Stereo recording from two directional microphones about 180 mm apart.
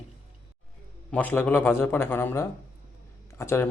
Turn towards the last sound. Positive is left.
turn(degrees=15)  # may be behind; listen again after turning